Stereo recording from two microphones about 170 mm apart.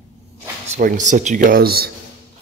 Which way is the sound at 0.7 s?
50° right (ahead or behind).